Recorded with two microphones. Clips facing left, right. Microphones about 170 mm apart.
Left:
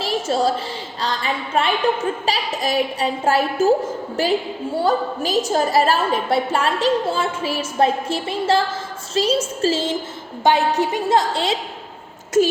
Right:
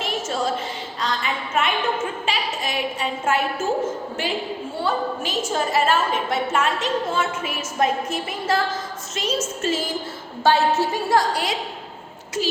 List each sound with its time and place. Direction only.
0.0 s a sound: 35° left (ahead or behind)
1.0 s a woman's voice: 30° left (ahead or behind)
10.4 s a woman's voice: 15° left (ahead or behind)
12.4 s a woman's voice: 45° left (ahead or behind)